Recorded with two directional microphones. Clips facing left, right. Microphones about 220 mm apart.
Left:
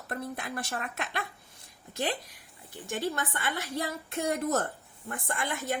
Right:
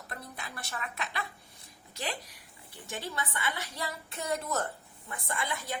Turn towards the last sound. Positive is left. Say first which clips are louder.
# left 2 dB
turn(degrees=50)  # may be behind; listen again after turning